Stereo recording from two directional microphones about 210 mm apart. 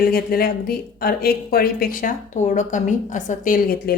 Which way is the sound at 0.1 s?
45° left (ahead or behind).